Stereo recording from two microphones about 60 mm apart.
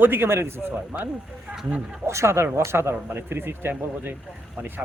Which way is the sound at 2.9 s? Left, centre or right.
Right.